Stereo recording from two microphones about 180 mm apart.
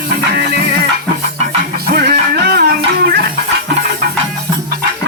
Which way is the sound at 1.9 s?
60° right (ahead or behind).